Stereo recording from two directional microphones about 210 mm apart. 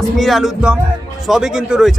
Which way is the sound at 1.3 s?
Centre (ahead or behind).